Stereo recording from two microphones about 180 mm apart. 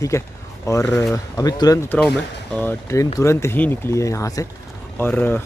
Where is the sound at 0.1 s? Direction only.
15° left (ahead or behind).